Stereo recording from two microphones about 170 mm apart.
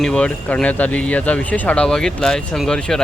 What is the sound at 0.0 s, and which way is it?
Speech, 5° left (ahead or behind).